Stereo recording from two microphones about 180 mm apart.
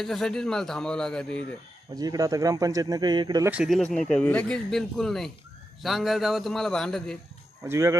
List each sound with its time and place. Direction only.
0.0 s speech: centre (ahead or behind)
2.0 s speech: 20° right (ahead or behind)
3.5 s speech: centre (ahead or behind)
7.6 s speech: 15° right (ahead or behind)